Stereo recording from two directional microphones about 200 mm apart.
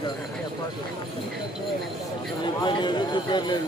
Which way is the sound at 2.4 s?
25° left (ahead or behind).